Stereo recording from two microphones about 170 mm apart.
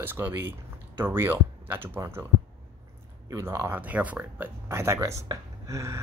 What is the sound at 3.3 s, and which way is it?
Speech, 15° right (ahead or behind).